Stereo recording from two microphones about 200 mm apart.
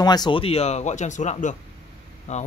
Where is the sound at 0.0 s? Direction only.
20° left (ahead or behind).